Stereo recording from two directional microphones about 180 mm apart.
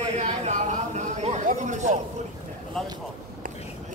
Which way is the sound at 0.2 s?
40° right (ahead or behind).